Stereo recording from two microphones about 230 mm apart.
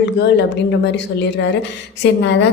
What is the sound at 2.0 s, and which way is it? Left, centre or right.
Speech, left.